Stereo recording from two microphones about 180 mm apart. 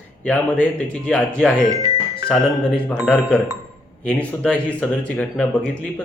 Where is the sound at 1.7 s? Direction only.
20° right (ahead or behind).